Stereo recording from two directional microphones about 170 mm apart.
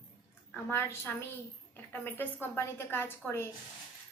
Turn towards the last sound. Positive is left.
turn(degrees=15)  # may be behind; listen again after turning